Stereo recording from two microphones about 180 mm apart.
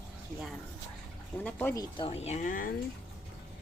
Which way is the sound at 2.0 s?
35° left (ahead or behind).